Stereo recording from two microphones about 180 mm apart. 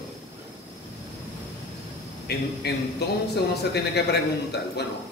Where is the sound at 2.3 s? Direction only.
65° left (ahead or behind).